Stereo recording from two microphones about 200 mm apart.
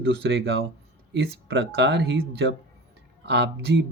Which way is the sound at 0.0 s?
60° right (ahead or behind).